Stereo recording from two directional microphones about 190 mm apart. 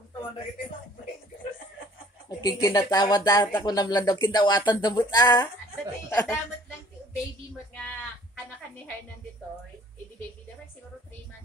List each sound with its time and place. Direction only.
2.2 s speech: 20° left (ahead or behind)